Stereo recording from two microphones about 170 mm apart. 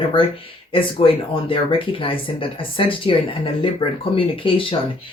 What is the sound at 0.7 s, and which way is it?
Speech, 30° left (ahead or behind).